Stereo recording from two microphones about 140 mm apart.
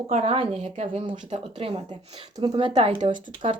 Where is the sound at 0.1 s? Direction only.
45° right (ahead or behind).